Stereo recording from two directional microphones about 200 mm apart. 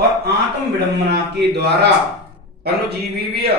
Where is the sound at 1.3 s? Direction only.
55° right (ahead or behind).